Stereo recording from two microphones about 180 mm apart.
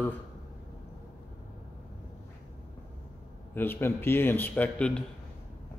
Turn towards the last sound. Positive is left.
turn(degrees=5)  # may be behind; listen again after turning